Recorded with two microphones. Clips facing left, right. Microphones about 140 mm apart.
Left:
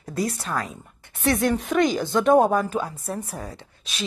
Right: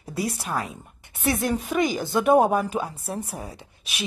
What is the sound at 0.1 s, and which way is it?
Speech, 10° right (ahead or behind).